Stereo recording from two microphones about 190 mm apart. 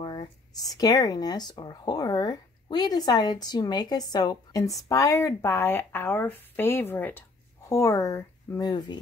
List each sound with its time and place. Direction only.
0.0 s speech: 25° left (ahead or behind)